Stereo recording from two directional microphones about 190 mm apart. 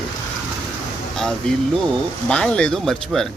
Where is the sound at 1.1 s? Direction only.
Centre (ahead or behind).